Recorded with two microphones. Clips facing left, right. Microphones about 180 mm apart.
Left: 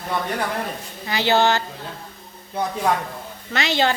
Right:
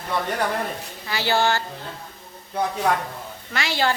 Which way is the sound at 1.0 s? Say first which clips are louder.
Left 3 dB; 20° left (ahead or behind).